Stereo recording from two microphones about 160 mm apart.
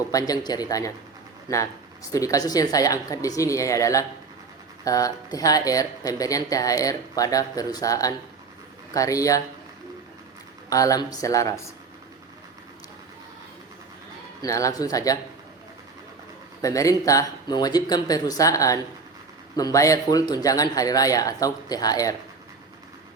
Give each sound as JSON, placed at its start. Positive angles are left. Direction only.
{"t": 0.1, "sound": "speech", "side_deg": 20}
{"t": 2.1, "sound": "speech", "side_deg": 20}
{"t": 10.7, "sound": "speech", "side_deg": 20}
{"t": 14.4, "sound": "speech", "side_deg": 20}
{"t": 16.6, "sound": "speech", "side_deg": 20}